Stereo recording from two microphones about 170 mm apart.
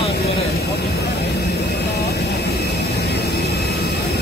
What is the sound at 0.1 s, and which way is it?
Vehicle, 65° left (ahead or behind).